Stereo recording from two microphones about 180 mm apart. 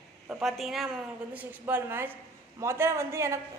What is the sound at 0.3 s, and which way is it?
A woman's voice, 5° right (ahead or behind).